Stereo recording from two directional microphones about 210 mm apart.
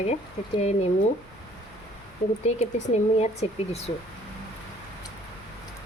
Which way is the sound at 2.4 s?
35° left (ahead or behind).